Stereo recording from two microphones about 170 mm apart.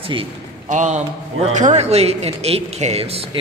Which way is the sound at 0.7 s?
45° right (ahead or behind).